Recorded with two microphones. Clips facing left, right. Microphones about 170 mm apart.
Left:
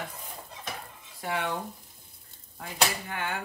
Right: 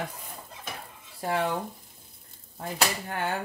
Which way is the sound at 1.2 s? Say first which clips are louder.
Right 4 dB; 35° right (ahead or behind).